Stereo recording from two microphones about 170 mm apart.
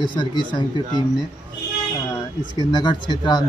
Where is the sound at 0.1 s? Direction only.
25° left (ahead or behind).